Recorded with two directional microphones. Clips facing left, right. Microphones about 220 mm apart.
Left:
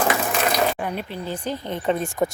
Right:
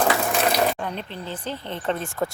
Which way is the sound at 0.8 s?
10° left (ahead or behind).